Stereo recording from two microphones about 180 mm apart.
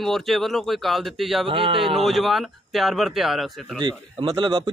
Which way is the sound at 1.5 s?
30° right (ahead or behind).